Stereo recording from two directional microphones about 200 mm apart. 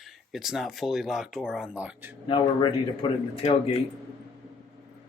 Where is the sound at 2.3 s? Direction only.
25° left (ahead or behind).